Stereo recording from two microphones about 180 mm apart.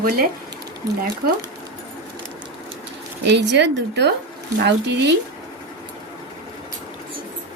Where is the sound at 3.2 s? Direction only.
70° right (ahead or behind).